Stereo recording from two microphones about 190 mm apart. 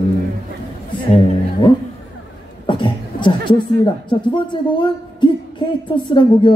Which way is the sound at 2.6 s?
25° left (ahead or behind).